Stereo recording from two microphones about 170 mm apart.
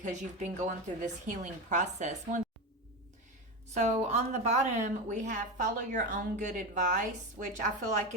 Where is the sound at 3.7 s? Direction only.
40° right (ahead or behind).